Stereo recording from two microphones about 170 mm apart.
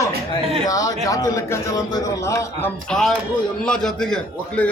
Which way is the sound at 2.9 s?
Centre (ahead or behind).